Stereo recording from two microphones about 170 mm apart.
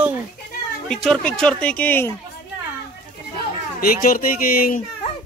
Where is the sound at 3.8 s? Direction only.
55° left (ahead or behind).